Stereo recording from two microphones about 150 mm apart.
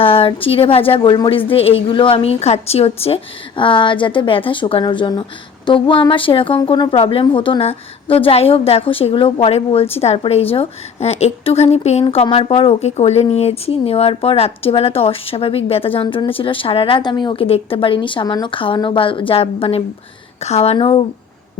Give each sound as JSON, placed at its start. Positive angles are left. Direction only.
{"t": 0.0, "sound": "a woman's voice", "side_deg": 40}